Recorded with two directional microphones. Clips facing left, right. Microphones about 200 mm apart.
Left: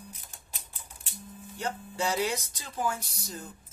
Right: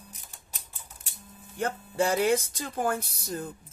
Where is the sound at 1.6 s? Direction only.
50° right (ahead or behind).